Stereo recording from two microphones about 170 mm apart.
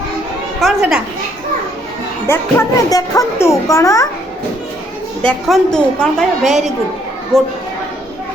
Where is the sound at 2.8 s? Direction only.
20° left (ahead or behind).